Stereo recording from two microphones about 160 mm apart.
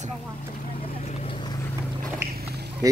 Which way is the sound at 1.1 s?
40° left (ahead or behind).